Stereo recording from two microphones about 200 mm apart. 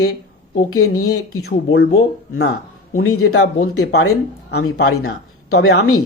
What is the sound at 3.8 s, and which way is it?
Speech, 55° left (ahead or behind).